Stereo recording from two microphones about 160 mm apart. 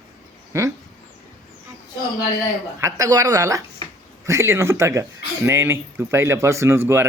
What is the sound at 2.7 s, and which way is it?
Speech, 20° right (ahead or behind).